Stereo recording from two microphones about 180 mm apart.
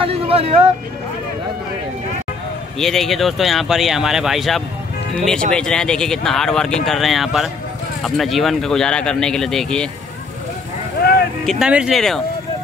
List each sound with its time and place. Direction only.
0.0 s speech: 35° right (ahead or behind)
2.8 s speech: centre (ahead or behind)
11.0 s a sound: 60° left (ahead or behind)
11.4 s speech: 5° right (ahead or behind)